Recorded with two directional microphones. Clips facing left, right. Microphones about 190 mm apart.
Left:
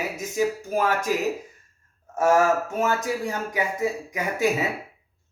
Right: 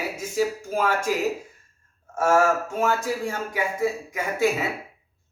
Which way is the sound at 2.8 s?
15° left (ahead or behind).